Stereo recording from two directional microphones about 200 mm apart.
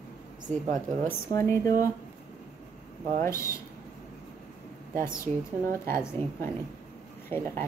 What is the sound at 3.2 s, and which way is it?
Speech, 15° left (ahead or behind).